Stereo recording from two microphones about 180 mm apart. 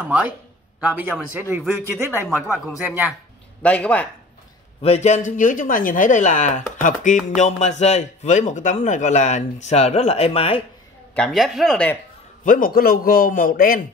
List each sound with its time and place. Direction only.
0.0 s a man's voice: 5° right (ahead or behind)
3.6 s speech: 5° left (ahead or behind)
4.8 s a man's voice: 40° left (ahead or behind)
11.1 s speech: centre (ahead or behind)
12.4 s speech: 50° left (ahead or behind)